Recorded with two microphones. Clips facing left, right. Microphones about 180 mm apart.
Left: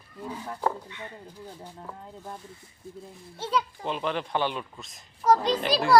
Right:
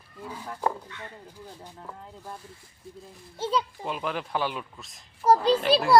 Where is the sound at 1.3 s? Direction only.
10° left (ahead or behind).